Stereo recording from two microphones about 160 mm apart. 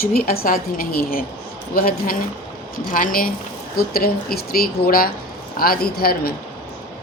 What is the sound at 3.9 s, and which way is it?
A woman's voice, 70° left (ahead or behind).